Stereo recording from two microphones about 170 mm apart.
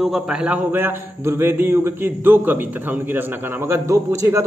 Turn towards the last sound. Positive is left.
turn(degrees=-20)  # may be behind; listen again after turning